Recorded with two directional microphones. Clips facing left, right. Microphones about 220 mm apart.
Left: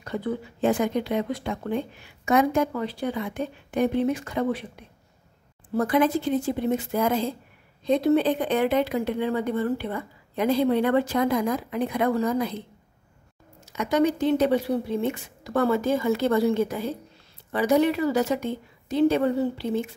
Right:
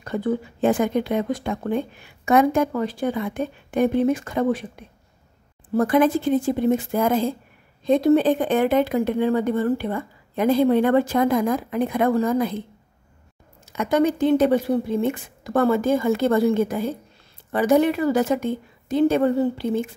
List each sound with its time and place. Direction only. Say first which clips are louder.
0.0 s speech: right 5 dB; 50° right (ahead or behind)
13.7 s speech: right 3 dB; 50° right (ahead or behind)